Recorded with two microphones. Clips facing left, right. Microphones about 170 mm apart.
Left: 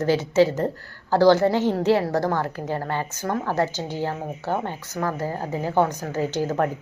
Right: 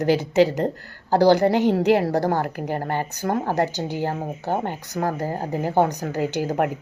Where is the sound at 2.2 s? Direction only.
40° right (ahead or behind).